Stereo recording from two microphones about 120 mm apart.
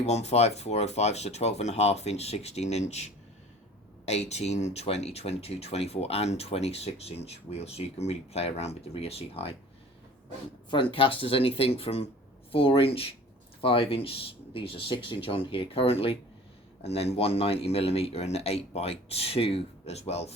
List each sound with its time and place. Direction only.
0.0 s speech: 65° left (ahead or behind)
10.9 s speech: 50° left (ahead or behind)